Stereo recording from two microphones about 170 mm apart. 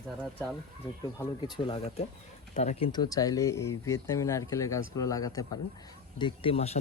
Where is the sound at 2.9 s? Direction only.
25° left (ahead or behind).